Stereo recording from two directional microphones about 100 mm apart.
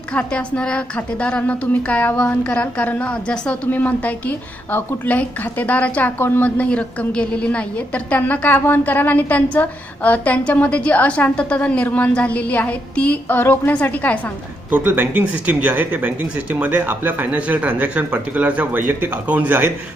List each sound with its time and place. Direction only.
0.1 s a woman's voice: 10° left (ahead or behind)
14.7 s speech: 20° right (ahead or behind)